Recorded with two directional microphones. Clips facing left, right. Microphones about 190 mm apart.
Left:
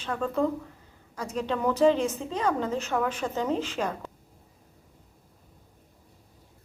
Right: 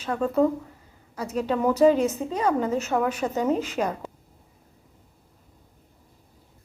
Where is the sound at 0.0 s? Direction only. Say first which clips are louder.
Right 5 dB; 10° right (ahead or behind).